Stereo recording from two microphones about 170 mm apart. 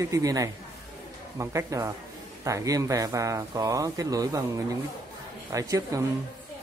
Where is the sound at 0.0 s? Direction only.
20° right (ahead or behind).